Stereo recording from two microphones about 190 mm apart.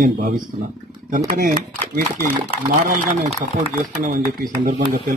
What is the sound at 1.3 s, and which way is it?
A man's voice, 45° right (ahead or behind).